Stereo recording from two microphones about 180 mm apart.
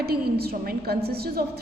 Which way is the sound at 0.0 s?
60° right (ahead or behind).